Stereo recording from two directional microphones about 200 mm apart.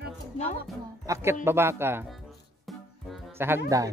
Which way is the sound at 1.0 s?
15° right (ahead or behind).